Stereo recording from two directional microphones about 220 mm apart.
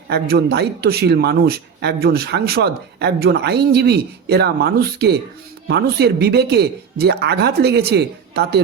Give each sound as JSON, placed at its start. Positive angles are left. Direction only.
{"t": 0.1, "sound": "speech", "side_deg": -45}